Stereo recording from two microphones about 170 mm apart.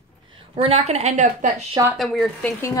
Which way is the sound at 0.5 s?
35° right (ahead or behind).